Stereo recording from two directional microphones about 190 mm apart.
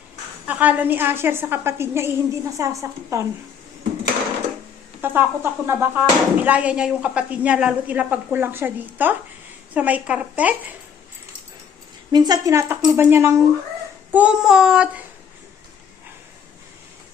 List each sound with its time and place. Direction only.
0.4 s speech: 10° right (ahead or behind)
4.9 s speech: 10° right (ahead or behind)
12.1 s a child's voice: 20° right (ahead or behind); by 15.0 s 5° right (ahead or behind)